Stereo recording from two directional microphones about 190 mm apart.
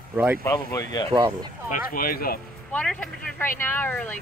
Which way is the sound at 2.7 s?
5° left (ahead or behind).